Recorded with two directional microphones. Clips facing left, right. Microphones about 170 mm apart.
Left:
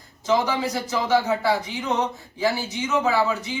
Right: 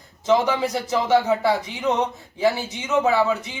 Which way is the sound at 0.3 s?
20° right (ahead or behind).